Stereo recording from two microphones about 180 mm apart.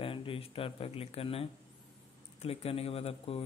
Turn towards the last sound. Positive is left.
turn(degrees=30)  # may be behind; listen again after turning